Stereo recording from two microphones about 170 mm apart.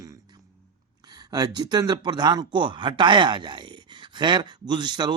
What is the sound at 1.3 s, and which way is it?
Speech, 20° right (ahead or behind).